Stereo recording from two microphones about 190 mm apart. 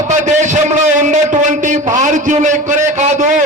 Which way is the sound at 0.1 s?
40° right (ahead or behind).